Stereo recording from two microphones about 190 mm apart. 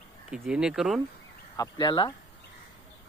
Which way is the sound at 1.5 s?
20° left (ahead or behind).